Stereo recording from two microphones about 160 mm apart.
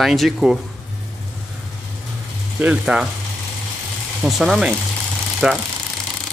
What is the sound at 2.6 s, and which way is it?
Speech, 5° right (ahead or behind).